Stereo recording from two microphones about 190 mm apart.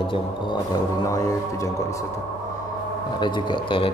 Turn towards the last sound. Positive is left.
turn(degrees=30)  # may be behind; listen again after turning